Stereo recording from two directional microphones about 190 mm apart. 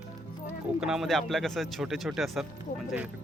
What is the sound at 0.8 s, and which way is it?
Speech, centre (ahead or behind).